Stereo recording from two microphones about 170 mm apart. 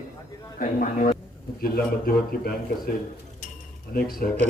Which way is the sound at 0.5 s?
50° left (ahead or behind).